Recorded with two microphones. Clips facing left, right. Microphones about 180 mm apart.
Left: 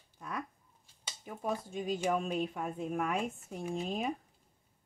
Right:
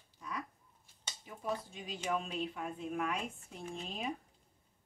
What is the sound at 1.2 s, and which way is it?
Speech, 50° left (ahead or behind).